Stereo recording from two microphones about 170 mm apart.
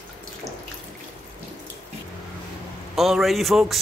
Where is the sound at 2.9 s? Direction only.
Centre (ahead or behind).